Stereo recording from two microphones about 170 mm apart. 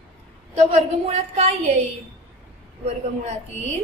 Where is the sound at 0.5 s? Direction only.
40° right (ahead or behind).